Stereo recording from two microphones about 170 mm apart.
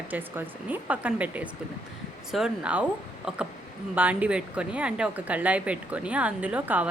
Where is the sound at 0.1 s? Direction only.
10° right (ahead or behind).